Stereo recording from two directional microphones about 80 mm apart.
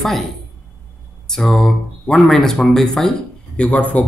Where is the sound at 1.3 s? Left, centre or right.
Centre.